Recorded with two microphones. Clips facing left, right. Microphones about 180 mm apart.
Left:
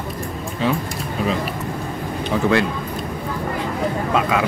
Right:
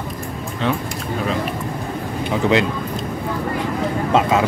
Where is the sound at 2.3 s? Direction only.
20° right (ahead or behind).